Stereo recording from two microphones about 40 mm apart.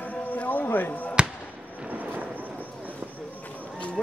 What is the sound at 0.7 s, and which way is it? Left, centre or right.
Speech, left.